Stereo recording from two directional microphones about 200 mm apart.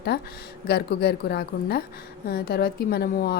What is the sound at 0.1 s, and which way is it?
Speech, 55° left (ahead or behind).